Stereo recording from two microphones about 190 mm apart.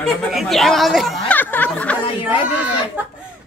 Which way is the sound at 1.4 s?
10° left (ahead or behind).